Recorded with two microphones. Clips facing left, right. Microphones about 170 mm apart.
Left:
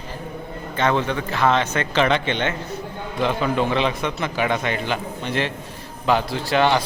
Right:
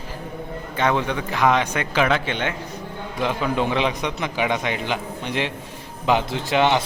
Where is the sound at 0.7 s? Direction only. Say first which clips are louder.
Left 1 dB; 10° right (ahead or behind).